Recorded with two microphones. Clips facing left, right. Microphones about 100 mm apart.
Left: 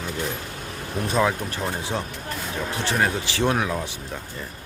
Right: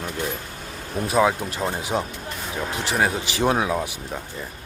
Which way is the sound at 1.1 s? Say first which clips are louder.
Right 3 dB; 15° right (ahead or behind).